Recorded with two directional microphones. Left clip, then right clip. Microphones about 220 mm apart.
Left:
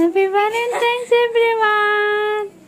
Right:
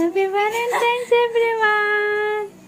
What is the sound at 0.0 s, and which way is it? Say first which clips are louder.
Humming: left 3 dB; 15° left (ahead or behind).